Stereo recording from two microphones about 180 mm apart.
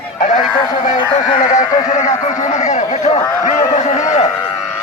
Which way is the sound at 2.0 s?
40° left (ahead or behind).